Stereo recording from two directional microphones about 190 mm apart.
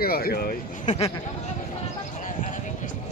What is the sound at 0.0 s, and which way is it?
Speech, 55° left (ahead or behind).